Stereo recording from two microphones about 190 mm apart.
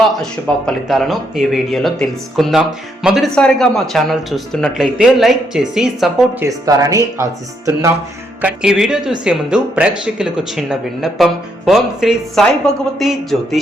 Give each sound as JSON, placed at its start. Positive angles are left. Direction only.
{"t": 0.1, "sound": "speech", "side_deg": 5}
{"t": 6.4, "sound": "speech", "side_deg": -15}